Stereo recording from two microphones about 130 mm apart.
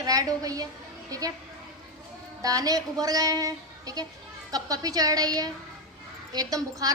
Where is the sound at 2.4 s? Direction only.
25° right (ahead or behind).